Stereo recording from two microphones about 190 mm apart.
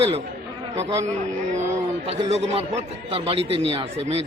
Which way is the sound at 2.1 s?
35° right (ahead or behind).